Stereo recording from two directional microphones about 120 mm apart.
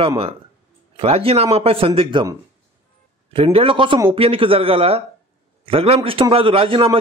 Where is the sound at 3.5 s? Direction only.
45° right (ahead or behind).